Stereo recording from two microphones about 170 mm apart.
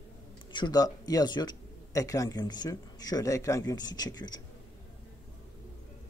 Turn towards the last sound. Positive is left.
turn(degrees=25)  # may be behind; listen again after turning